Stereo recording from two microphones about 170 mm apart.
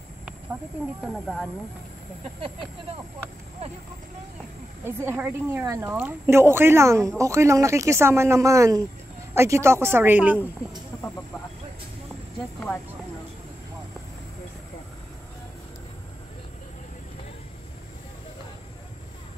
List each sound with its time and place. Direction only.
1.0 s speech: centre (ahead or behind)
4.8 s speech: 15° right (ahead or behind)